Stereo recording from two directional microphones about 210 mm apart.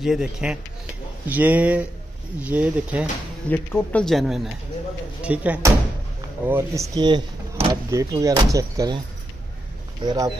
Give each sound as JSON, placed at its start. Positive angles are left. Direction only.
{"t": 0.0, "sound": "speech", "side_deg": -5}
{"t": 3.4, "sound": "speech", "side_deg": 10}
{"t": 10.0, "sound": "speech", "side_deg": -15}